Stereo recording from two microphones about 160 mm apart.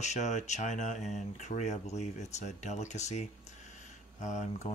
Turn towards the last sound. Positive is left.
turn(degrees=45)  # may be behind; listen again after turning